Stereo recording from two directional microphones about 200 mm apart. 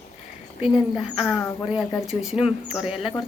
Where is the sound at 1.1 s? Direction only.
5° right (ahead or behind).